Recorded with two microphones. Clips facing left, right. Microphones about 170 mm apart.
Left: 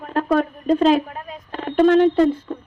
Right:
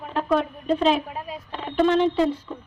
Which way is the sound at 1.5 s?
50° left (ahead or behind).